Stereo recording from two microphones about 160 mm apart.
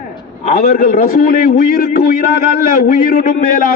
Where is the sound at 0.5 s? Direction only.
65° left (ahead or behind).